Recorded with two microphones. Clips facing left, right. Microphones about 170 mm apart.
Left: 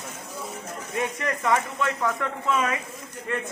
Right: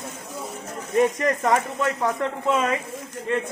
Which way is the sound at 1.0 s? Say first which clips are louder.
Right 8 dB; 40° right (ahead or behind).